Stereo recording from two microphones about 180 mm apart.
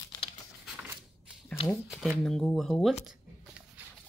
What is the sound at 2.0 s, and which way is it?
Speech, centre (ahead or behind).